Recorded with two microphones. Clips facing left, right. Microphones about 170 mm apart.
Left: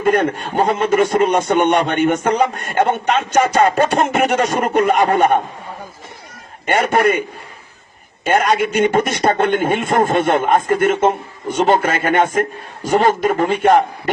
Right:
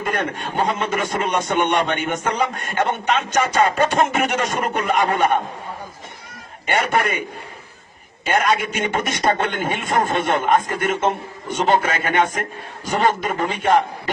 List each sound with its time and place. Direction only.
0.0 s a man's voice: 40° left (ahead or behind)
6.7 s a man's voice: 45° left (ahead or behind)
8.2 s a man's voice: 40° left (ahead or behind)